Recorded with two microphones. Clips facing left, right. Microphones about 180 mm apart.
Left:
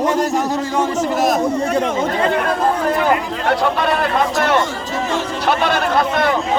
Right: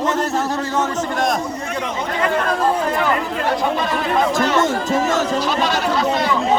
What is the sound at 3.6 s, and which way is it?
Speech, 65° left (ahead or behind).